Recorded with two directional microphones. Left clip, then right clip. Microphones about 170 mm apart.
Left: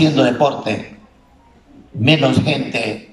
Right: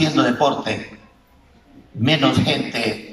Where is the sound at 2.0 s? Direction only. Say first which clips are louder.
Left 3 dB; 20° left (ahead or behind).